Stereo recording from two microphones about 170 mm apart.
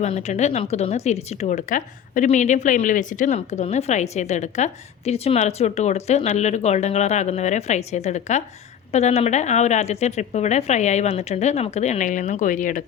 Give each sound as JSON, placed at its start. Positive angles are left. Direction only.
{"t": 0.0, "sound": "speech", "side_deg": 40}